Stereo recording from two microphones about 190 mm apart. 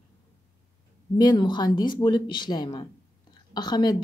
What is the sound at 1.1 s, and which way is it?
A woman's voice, 25° left (ahead or behind).